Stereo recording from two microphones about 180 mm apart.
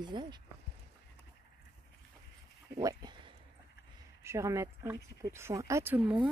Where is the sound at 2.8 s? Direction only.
20° right (ahead or behind).